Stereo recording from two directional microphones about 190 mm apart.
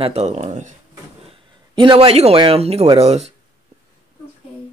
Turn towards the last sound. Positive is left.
turn(degrees=-35)  # may be behind; listen again after turning